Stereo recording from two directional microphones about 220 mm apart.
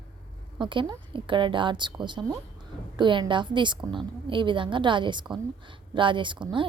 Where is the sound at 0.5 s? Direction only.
20° right (ahead or behind).